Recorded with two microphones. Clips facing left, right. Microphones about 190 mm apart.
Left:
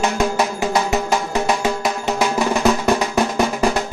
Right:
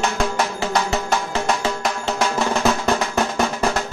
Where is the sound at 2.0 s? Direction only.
10° left (ahead or behind).